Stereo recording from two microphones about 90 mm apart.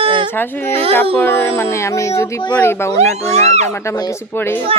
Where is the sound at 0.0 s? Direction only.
75° right (ahead or behind).